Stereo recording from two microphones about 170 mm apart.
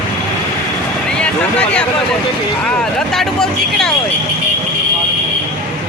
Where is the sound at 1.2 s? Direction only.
5° left (ahead or behind).